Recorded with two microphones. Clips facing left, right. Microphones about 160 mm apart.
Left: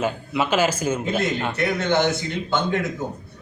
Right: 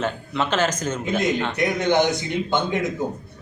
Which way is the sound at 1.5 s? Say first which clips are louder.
Right 1 dB; 15° right (ahead or behind).